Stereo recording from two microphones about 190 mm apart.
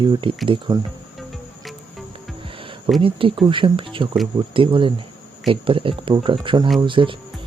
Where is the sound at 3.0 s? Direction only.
25° right (ahead or behind).